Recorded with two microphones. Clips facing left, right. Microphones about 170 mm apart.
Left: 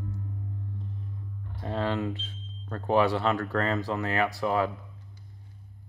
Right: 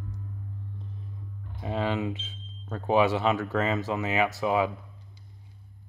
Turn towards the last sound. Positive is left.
turn(degrees=-10)  # may be behind; listen again after turning